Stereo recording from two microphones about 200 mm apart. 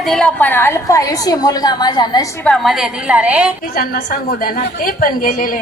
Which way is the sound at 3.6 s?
45° left (ahead or behind).